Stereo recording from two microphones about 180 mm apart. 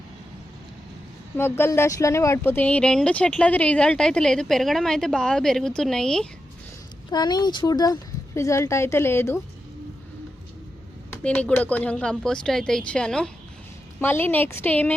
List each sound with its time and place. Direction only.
1.4 s speech: 15° left (ahead or behind)
7.1 s a woman's voice: 20° left (ahead or behind)
11.2 s a woman's voice: 5° left (ahead or behind)